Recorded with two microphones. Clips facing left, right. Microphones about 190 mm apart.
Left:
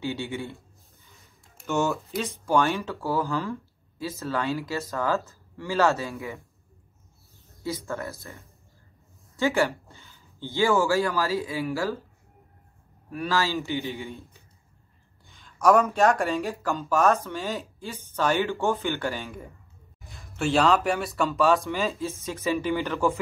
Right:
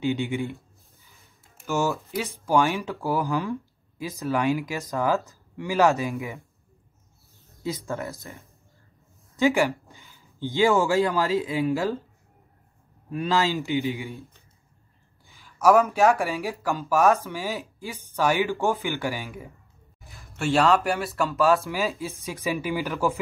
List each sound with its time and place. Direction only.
0.0 s speech: 20° right (ahead or behind)
1.7 s speech: centre (ahead or behind)
2.0 s speech: 10° right (ahead or behind)
7.6 s speech: 15° right (ahead or behind)
13.1 s speech: 20° right (ahead or behind)
15.4 s speech: 5° right (ahead or behind)